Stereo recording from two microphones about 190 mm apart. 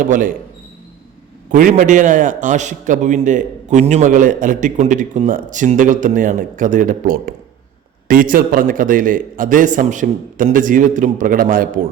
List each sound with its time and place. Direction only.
0.0 s a man's voice: 45° right (ahead or behind)
1.5 s a man's voice: 45° right (ahead or behind)